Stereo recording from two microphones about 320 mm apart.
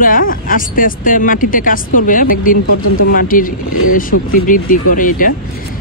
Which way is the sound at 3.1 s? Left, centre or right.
Left.